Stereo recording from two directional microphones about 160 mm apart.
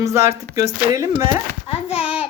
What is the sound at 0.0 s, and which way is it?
Speech, 20° right (ahead or behind).